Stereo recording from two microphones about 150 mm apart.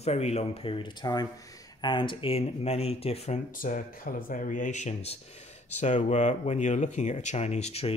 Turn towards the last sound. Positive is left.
turn(degrees=45)  # may be behind; listen again after turning